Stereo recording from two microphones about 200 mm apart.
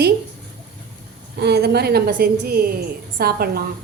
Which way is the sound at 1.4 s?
55° right (ahead or behind).